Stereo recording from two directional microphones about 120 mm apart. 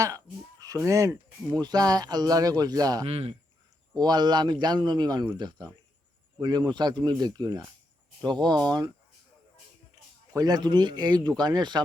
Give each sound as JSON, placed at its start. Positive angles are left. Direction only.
{"t": 0.8, "sound": "speech", "side_deg": -25}
{"t": 3.1, "sound": "speech", "side_deg": -55}
{"t": 3.9, "sound": "speech", "side_deg": -35}
{"t": 10.3, "sound": "speech", "side_deg": -30}